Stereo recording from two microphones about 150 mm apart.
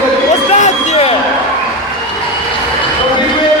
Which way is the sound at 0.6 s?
45° left (ahead or behind).